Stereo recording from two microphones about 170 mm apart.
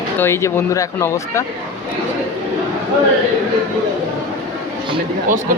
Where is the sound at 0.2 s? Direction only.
15° left (ahead or behind).